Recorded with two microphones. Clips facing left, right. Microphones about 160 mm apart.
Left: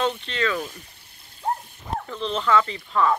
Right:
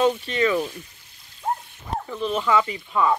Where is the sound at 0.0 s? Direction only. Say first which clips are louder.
Right 4 dB; 10° right (ahead or behind).